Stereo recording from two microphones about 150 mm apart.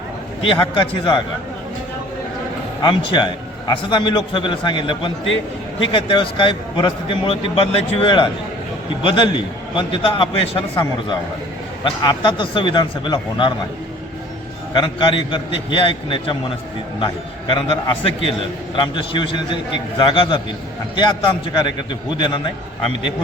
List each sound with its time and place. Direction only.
0.4 s a man's voice: 35° left (ahead or behind)
2.8 s a man's voice: 30° left (ahead or behind)
14.7 s a man's voice: 30° left (ahead or behind)
17.5 s a man's voice: 35° left (ahead or behind)
22.2 s a man's voice: 30° left (ahead or behind)